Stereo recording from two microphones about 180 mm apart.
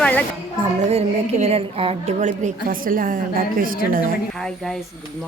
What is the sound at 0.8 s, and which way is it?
A woman's voice, 35° right (ahead or behind).